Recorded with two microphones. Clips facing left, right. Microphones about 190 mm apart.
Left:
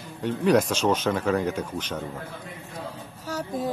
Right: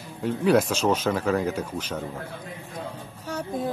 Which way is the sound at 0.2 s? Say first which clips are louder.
Even; 5° right (ahead or behind).